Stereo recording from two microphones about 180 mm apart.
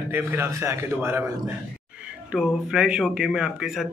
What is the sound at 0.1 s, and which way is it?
A man's voice, 15° right (ahead or behind).